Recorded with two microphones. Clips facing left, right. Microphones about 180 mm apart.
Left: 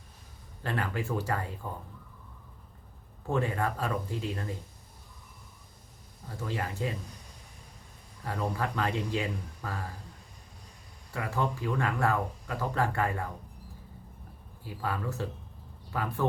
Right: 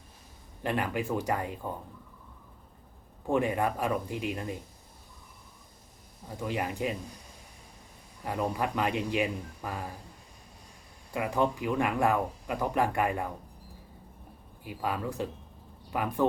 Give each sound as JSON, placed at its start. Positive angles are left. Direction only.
{"t": 0.6, "sound": "speech", "side_deg": -15}
{"t": 3.2, "sound": "speech", "side_deg": -15}
{"t": 6.2, "sound": "speech", "side_deg": -15}
{"t": 8.2, "sound": "speech", "side_deg": -15}
{"t": 11.1, "sound": "speech", "side_deg": -15}
{"t": 14.6, "sound": "speech", "side_deg": -15}